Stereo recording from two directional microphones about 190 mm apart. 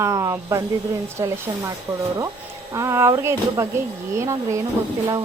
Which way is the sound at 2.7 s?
15° right (ahead or behind).